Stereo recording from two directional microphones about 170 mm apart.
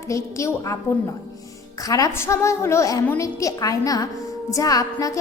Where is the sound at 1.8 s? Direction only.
20° left (ahead or behind).